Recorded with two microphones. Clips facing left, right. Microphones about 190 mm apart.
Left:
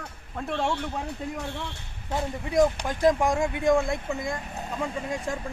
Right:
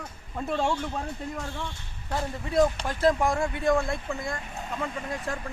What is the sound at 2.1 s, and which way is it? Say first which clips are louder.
Speech: left 1 dB; 15° left (ahead or behind).